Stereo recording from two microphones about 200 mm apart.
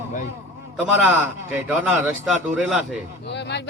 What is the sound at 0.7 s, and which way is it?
A man's voice, 10° right (ahead or behind).